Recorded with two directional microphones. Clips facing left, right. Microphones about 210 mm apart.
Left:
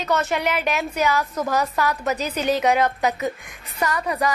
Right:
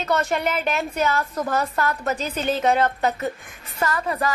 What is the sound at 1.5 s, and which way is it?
Speech, 10° left (ahead or behind).